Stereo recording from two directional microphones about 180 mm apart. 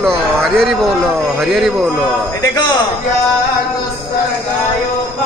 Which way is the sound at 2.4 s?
20° left (ahead or behind).